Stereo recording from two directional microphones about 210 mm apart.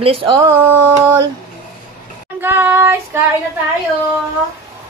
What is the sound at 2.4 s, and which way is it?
Child singing, 10° right (ahead or behind).